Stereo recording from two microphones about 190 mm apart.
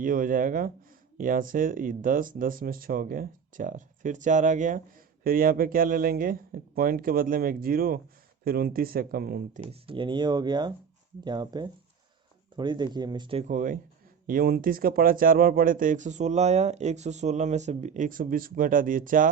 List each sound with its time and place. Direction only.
0.0 s speech: 45° right (ahead or behind)
9.8 s speech: 25° right (ahead or behind)
13.5 s speech: 45° right (ahead or behind)